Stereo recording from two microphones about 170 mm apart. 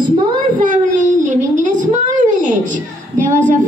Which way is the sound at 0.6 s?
50° right (ahead or behind).